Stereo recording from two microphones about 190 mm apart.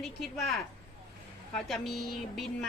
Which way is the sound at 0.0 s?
Centre (ahead or behind).